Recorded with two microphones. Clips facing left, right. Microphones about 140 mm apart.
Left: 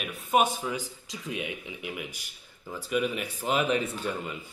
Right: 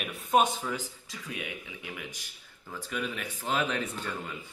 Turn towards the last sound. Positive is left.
turn(degrees=15)  # may be behind; listen again after turning